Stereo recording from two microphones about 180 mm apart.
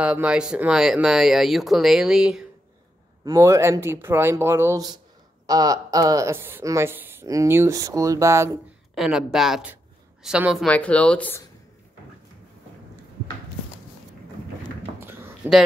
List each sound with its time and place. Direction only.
0.0 s speech: 5° right (ahead or behind)
3.3 s speech: 15° right (ahead or behind)
8.9 s speech: centre (ahead or behind)
10.7 s speech: 5° left (ahead or behind)
15.0 s a sound: 10° right (ahead or behind)